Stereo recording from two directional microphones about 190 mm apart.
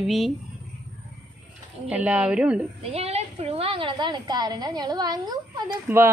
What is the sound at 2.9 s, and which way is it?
A woman's voice, 35° right (ahead or behind).